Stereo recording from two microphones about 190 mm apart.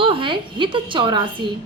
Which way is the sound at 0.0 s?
25° right (ahead or behind).